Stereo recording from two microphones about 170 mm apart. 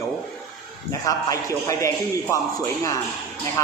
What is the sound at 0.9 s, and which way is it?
A man's voice, 20° left (ahead or behind).